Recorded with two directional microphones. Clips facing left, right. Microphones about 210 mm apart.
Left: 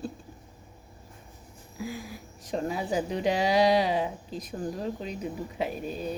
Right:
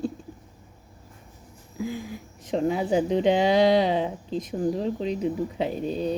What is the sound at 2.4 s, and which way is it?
Speech, 25° right (ahead or behind).